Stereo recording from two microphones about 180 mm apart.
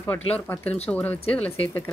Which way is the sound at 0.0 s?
10° left (ahead or behind).